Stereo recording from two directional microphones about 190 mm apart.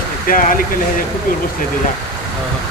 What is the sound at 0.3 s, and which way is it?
Speech, 45° left (ahead or behind).